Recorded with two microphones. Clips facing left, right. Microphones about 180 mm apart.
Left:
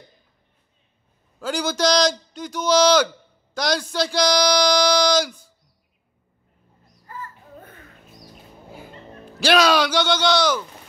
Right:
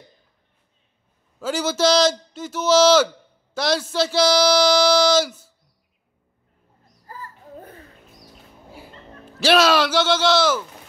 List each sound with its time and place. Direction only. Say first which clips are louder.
1.4 s speech: right 2 dB; 5° right (ahead or behind)
7.1 s a sound: left 1 dB; 35° right (ahead or behind)
9.2 s speech: right 1 dB; 5° right (ahead or behind)